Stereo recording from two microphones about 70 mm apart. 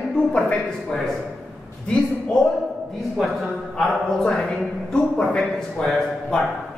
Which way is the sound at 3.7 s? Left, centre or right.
Centre.